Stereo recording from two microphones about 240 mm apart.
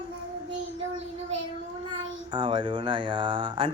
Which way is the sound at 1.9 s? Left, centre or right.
Centre.